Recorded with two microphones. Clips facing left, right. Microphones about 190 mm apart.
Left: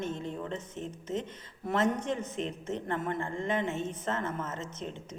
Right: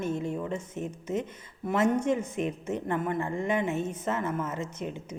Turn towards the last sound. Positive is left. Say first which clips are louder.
# right 4 dB
turn(degrees=-10)  # may be behind; listen again after turning